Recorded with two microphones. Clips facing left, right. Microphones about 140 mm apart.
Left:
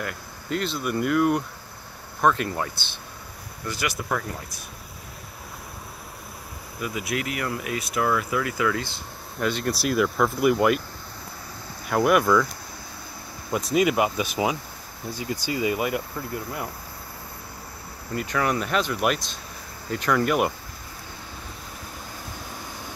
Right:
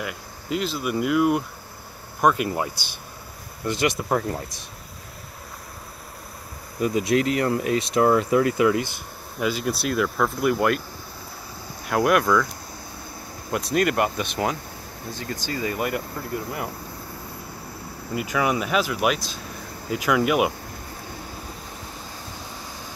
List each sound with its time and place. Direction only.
0.0 s speech: 5° right (ahead or behind)
3.6 s speech: 25° right (ahead or behind)
6.8 s speech: 35° right (ahead or behind)
9.4 s speech: 5° right (ahead or behind)
11.8 s speech: centre (ahead or behind)
13.5 s speech: centre (ahead or behind)
18.1 s speech: 10° right (ahead or behind)